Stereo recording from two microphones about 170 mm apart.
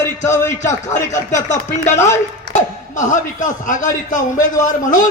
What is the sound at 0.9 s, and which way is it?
Speech, 20° left (ahead or behind).